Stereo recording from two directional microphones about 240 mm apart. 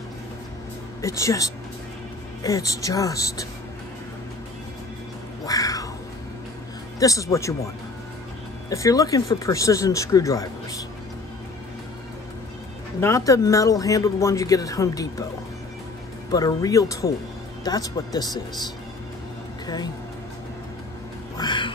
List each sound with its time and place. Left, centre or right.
1.0 s speech: centre
5.4 s cat: centre
7.0 s speech: centre
8.6 s speech: centre
13.0 s speech: centre
16.3 s speech: centre
19.6 s a woman's voice: centre
21.4 s speech: centre